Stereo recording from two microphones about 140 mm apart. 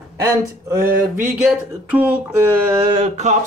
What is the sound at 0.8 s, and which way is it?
Speech, 90° right.